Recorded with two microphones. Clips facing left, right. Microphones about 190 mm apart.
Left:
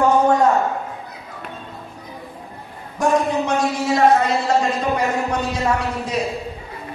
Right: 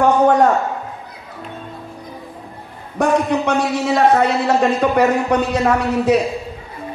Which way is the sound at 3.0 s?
65° right (ahead or behind).